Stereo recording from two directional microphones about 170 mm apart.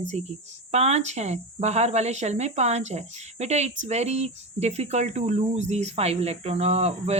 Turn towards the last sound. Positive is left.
turn(degrees=-40)  # may be behind; listen again after turning